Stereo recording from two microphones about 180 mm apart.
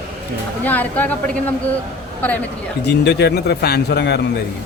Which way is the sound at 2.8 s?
65° left (ahead or behind).